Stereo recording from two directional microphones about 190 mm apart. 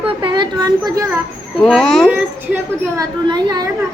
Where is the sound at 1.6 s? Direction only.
Centre (ahead or behind).